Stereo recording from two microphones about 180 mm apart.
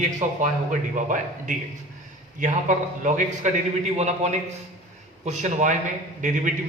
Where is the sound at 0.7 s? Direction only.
45° right (ahead or behind).